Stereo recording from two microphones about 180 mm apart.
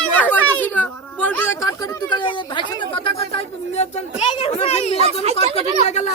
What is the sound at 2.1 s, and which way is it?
Speech, 25° left (ahead or behind).